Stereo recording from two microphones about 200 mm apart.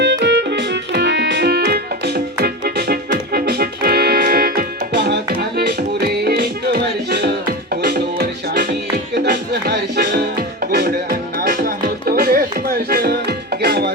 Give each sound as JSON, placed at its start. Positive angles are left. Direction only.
{"t": 0.0, "sound": "keyboard", "side_deg": -60}
{"t": 6.2, "sound": "music", "side_deg": -50}